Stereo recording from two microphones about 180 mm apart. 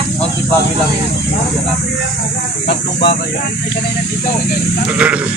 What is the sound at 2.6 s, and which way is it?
Speech, 65° left (ahead or behind).